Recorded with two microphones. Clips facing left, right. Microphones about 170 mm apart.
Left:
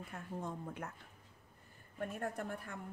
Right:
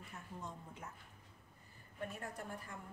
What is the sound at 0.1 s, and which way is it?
Speech, 55° left (ahead or behind).